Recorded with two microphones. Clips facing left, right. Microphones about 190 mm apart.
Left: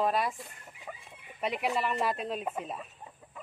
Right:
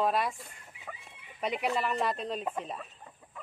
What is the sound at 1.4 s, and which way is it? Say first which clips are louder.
Speech: even; centre (ahead or behind).